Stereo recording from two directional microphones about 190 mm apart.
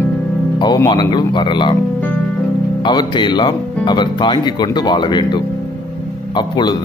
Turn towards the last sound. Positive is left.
turn(degrees=25)  # may be behind; listen again after turning